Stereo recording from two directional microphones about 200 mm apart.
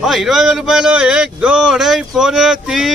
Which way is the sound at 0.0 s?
Centre (ahead or behind).